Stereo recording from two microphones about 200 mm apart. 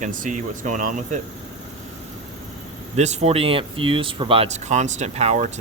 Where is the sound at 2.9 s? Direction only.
35° right (ahead or behind).